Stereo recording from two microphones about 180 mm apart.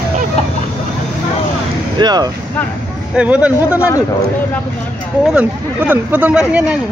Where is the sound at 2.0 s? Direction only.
20° right (ahead or behind).